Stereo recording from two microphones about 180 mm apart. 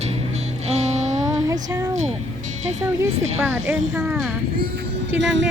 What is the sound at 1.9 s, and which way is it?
Music, 40° right (ahead or behind).